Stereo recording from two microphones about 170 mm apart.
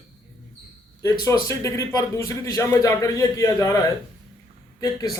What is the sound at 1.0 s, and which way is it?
A man's voice, 20° left (ahead or behind).